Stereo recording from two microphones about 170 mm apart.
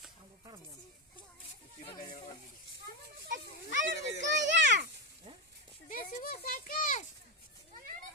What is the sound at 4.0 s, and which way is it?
Children playing, 90° left.